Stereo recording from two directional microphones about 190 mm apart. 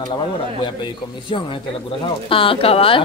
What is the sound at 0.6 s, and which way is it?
Speech, 25° left (ahead or behind).